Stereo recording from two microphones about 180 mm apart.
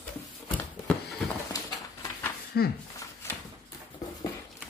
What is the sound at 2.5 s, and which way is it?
Speech, 65° left (ahead or behind).